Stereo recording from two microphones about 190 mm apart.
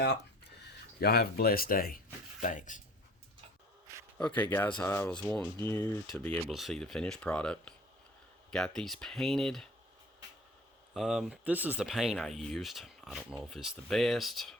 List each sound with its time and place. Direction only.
0.6 s speech: 60° left (ahead or behind); by 2.8 s 40° left (ahead or behind)
4.2 s speech: 10° left (ahead or behind)
10.9 s speech: centre (ahead or behind)